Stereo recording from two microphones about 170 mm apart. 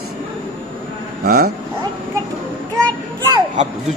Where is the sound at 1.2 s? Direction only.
65° right (ahead or behind).